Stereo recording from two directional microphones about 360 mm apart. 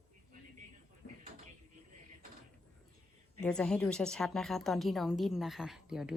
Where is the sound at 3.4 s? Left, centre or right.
Centre.